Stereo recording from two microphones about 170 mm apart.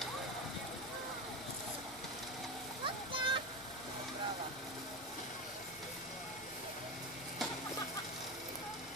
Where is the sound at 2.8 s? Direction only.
30° right (ahead or behind).